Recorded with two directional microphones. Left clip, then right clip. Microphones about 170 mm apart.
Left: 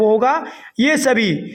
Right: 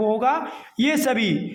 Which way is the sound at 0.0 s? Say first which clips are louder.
Left 6 dB; 35° left (ahead or behind).